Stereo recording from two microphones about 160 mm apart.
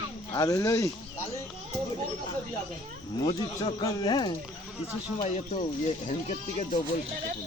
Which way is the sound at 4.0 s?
25° left (ahead or behind).